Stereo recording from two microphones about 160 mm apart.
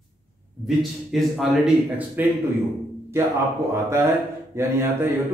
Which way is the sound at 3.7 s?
15° right (ahead or behind).